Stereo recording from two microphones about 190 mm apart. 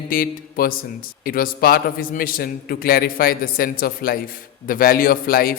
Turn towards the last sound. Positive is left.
turn(degrees=50)  # may be behind; listen again after turning